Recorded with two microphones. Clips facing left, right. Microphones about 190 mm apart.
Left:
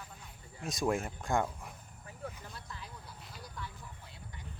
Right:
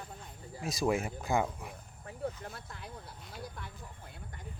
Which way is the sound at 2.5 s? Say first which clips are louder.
Right 1 dB; 55° right (ahead or behind).